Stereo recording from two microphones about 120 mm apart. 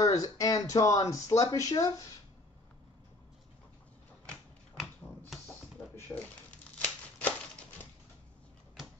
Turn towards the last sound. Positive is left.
turn(degrees=15)  # may be behind; listen again after turning